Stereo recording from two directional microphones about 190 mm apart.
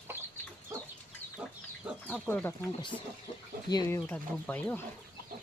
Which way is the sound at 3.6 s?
20° left (ahead or behind).